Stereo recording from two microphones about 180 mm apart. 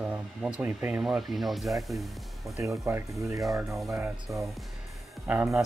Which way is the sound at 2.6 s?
15° right (ahead or behind).